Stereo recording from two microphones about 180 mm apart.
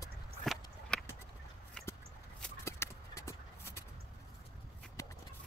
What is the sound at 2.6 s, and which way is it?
Clip-clop, 15° left (ahead or behind).